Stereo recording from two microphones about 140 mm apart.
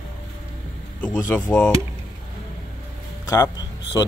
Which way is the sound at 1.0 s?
15° left (ahead or behind).